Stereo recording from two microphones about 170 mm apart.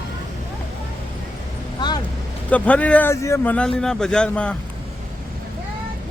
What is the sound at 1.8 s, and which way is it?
Vehicle, 25° left (ahead or behind).